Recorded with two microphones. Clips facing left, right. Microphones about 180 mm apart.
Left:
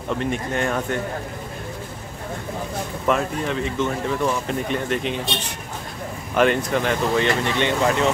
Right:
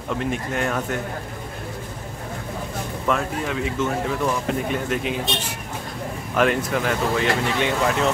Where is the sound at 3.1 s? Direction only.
5° right (ahead or behind).